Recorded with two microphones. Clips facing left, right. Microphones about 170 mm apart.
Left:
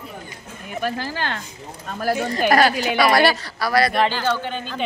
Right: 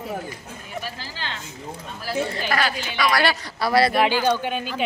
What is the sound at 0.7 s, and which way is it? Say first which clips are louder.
Speech: left 9 dB; 55° left (ahead or behind).